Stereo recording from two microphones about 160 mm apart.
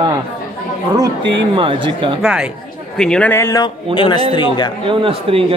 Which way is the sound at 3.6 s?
30° left (ahead or behind).